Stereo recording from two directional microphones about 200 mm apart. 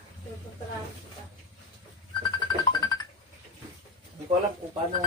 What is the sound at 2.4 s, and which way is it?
Music, 20° left (ahead or behind).